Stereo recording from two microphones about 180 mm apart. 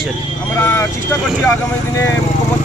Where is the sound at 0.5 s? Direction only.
10° left (ahead or behind).